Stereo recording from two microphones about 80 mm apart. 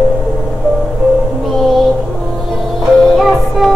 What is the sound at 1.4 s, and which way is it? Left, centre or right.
Music, centre.